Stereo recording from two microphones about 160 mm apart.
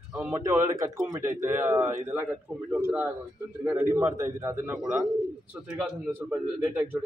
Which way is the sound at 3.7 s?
15° right (ahead or behind).